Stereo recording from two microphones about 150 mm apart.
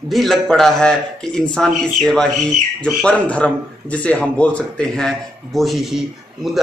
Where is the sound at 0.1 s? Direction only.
Centre (ahead or behind).